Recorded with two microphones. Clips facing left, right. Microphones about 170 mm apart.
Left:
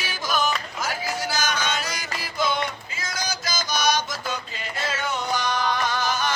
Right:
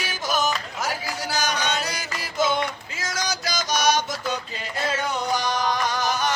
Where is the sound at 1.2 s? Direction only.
35° right (ahead or behind).